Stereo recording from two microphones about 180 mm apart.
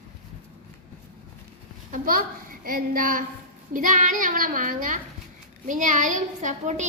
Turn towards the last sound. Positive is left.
turn(degrees=-40)  # may be behind; listen again after turning